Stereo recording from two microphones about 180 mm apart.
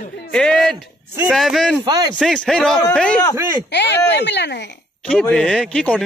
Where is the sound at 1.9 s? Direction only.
20° right (ahead or behind).